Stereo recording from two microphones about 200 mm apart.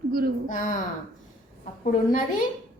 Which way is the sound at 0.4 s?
40° left (ahead or behind).